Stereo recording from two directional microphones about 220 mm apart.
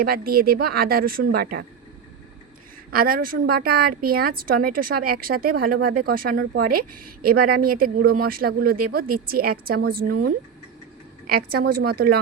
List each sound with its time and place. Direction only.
0.0 s speech: 45° right (ahead or behind)
2.9 s a woman's voice: 40° right (ahead or behind)
11.3 s speech: 45° right (ahead or behind)